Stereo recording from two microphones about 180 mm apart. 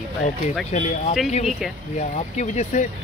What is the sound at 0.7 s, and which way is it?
Speech, 40° left (ahead or behind).